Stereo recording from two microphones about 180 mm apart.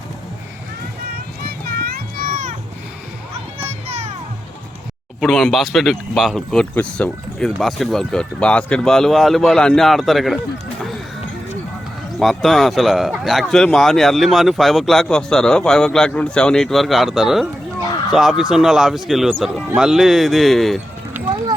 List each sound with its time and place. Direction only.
1.1 s music: 60° right (ahead or behind)
3.6 s music: 35° right (ahead or behind)
5.2 s speech: centre (ahead or behind)
12.2 s speech: centre (ahead or behind)